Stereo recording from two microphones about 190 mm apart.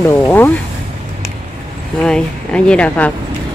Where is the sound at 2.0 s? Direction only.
5° left (ahead or behind).